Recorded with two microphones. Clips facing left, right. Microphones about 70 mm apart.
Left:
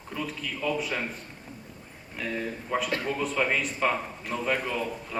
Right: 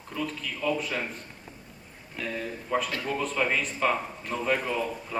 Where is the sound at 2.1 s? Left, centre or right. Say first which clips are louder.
Left 1 dB; centre.